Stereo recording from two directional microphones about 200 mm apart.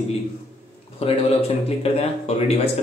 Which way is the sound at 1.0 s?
30° left (ahead or behind).